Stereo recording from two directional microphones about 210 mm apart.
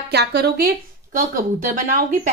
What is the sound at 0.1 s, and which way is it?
Speech, 50° right (ahead or behind).